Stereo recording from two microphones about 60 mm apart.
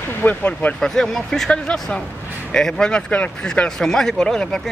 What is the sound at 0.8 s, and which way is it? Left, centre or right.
Speech, centre.